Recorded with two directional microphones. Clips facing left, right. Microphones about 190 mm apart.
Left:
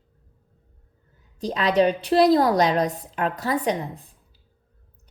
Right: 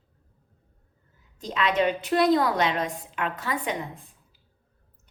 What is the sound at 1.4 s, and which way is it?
A woman's voice, 35° left (ahead or behind).